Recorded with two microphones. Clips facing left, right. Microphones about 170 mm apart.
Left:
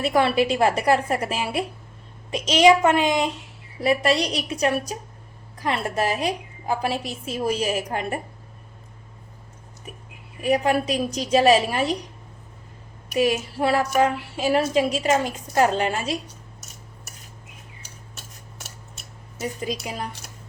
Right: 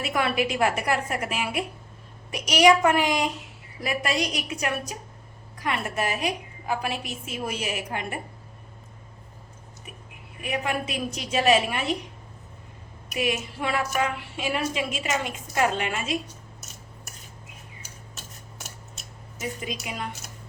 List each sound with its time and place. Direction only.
0.0 s a woman's voice: 30° left (ahead or behind)
10.4 s a woman's voice: 35° left (ahead or behind)
13.1 s a woman's voice: 35° left (ahead or behind)
19.4 s a woman's voice: 35° left (ahead or behind)